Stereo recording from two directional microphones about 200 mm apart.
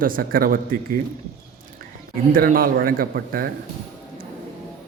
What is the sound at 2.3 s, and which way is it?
Speech, 45° right (ahead or behind).